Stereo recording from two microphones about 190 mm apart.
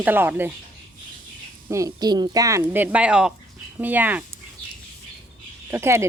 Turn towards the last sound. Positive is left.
turn(degrees=-15)  # may be behind; listen again after turning